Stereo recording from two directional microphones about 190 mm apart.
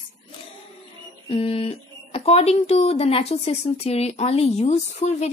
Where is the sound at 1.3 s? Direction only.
30° left (ahead or behind).